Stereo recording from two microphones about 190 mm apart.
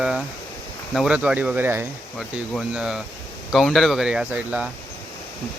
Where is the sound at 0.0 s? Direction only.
5° right (ahead or behind).